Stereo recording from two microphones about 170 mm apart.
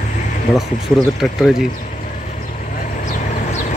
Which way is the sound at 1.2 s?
Centre (ahead or behind).